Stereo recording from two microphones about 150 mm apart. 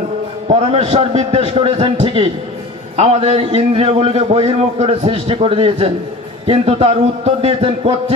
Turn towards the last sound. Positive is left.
turn(degrees=-40)  # may be behind; listen again after turning